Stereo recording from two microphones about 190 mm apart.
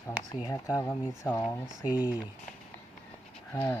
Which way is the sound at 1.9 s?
5° right (ahead or behind).